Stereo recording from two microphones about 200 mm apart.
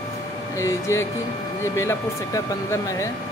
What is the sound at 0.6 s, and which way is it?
Speech, 15° left (ahead or behind).